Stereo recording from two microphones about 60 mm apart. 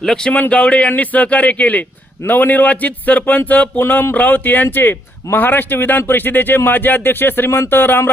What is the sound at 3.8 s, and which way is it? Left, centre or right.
Speech, left.